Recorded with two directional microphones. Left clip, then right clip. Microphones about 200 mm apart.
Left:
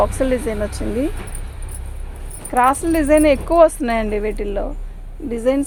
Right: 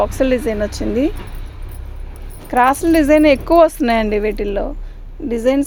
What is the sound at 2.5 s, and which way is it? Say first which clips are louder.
Speech: right 3 dB; 55° right (ahead or behind).